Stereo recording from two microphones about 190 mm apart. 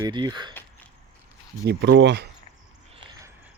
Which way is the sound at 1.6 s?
65° right (ahead or behind).